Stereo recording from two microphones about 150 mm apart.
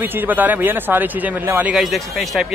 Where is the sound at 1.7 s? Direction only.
Centre (ahead or behind).